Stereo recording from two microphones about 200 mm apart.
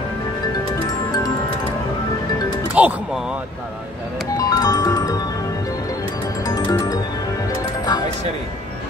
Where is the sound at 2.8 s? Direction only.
5° right (ahead or behind).